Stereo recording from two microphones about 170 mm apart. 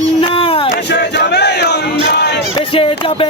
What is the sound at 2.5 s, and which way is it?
Speech, 30° left (ahead or behind).